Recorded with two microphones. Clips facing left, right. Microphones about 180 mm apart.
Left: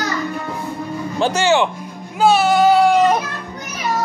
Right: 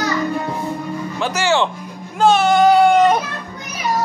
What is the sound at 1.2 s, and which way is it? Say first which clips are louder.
Speech: left 5 dB; 30° left (ahead or behind).